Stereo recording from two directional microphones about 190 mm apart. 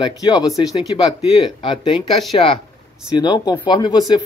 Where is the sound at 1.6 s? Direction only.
25° left (ahead or behind).